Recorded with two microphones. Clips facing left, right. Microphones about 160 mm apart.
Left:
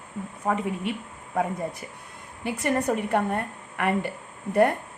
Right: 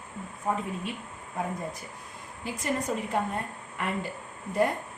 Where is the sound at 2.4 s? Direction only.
65° left (ahead or behind).